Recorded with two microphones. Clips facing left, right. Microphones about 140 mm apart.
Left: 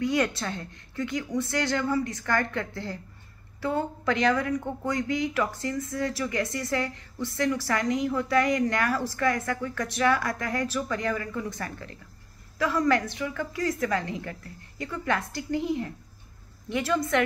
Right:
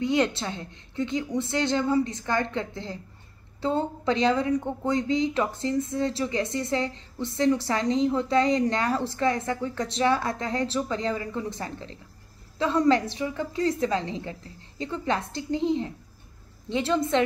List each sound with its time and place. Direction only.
0.0 s speech: 25° right (ahead or behind)